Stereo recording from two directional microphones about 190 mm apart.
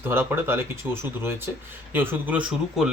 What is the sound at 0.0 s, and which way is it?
A man's voice, 10° right (ahead or behind).